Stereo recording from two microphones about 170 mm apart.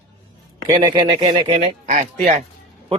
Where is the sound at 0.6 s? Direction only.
25° right (ahead or behind).